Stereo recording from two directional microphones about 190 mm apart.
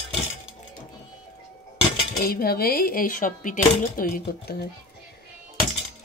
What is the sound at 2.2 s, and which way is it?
Speech, 55° left (ahead or behind).